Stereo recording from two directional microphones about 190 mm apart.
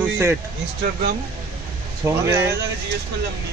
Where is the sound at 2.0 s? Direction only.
15° right (ahead or behind).